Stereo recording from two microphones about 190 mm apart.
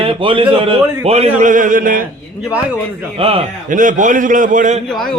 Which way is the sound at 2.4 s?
5° right (ahead or behind).